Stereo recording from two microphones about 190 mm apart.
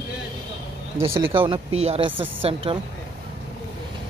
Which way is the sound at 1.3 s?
25° right (ahead or behind).